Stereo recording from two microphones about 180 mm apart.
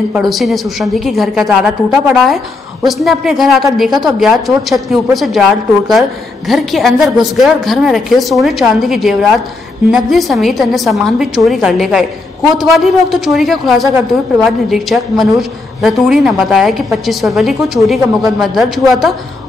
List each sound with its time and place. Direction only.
0.1 s a woman's voice: centre (ahead or behind)